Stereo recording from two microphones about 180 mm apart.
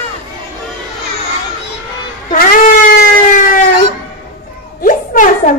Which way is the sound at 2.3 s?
50° left (ahead or behind).